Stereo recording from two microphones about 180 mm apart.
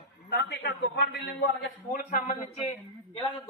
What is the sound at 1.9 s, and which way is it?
Speech, 50° left (ahead or behind).